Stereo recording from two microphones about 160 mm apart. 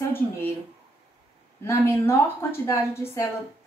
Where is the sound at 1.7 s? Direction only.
15° left (ahead or behind).